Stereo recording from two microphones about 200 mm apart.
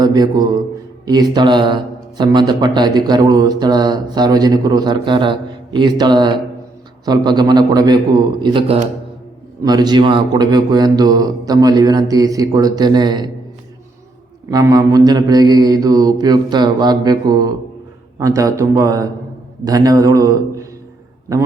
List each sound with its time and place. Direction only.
0.0 s speech: 20° right (ahead or behind)
14.5 s a man's voice: 20° right (ahead or behind)